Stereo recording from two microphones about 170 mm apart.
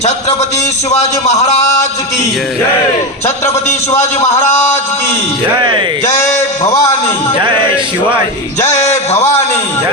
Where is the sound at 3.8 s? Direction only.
40° left (ahead or behind).